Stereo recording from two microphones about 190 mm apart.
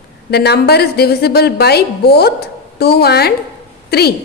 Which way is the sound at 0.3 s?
60° left (ahead or behind).